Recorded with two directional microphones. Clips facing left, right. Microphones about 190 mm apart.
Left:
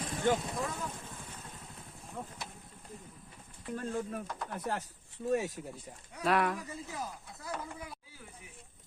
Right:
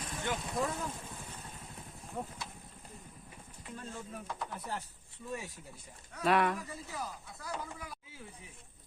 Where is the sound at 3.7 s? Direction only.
50° left (ahead or behind).